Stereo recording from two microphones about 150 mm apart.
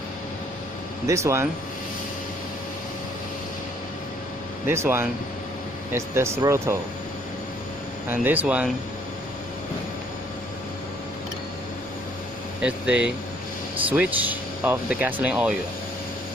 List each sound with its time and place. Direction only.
1.0 s speech: 20° right (ahead or behind)
4.6 s speech: 15° right (ahead or behind)
8.1 s speech: 10° right (ahead or behind)
12.6 s speech: 10° right (ahead or behind)